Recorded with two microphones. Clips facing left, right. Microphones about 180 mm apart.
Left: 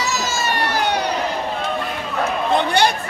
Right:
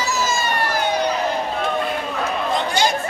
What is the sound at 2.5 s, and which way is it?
Chatter, 60° left (ahead or behind).